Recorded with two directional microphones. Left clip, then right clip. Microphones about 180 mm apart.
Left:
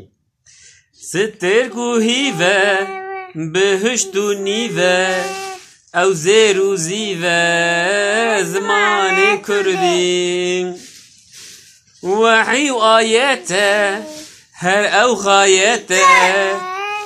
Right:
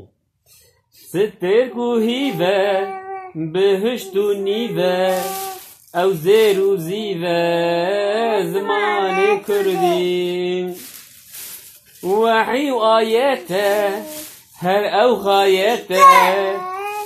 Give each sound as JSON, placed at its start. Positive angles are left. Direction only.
{"t": 1.1, "sound": "mantra", "side_deg": 15}
{"t": 12.2, "sound": "mantra", "side_deg": 15}